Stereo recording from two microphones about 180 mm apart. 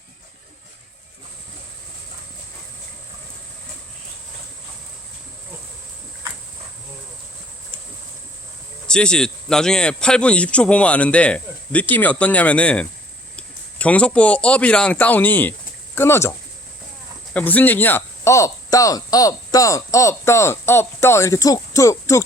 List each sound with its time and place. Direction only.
8.9 s speech: 5° left (ahead or behind)
17.3 s speech: 10° left (ahead or behind)